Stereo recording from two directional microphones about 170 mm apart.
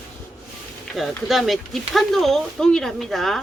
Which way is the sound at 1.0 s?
Centre (ahead or behind).